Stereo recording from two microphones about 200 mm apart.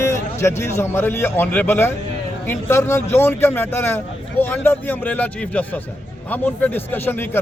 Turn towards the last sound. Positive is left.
turn(degrees=10)  # may be behind; listen again after turning